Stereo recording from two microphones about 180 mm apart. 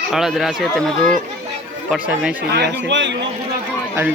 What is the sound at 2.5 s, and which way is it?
Speech, 65° right (ahead or behind).